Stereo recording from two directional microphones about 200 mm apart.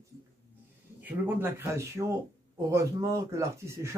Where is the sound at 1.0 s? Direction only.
10° right (ahead or behind).